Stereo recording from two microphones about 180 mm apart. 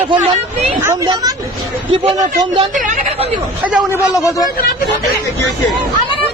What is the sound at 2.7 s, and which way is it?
Speech, 45° right (ahead or behind).